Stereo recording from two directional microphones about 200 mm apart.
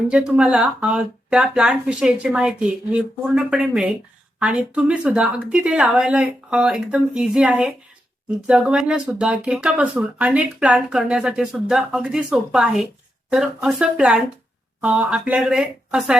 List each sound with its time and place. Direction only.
0.1 s speech: 5° right (ahead or behind)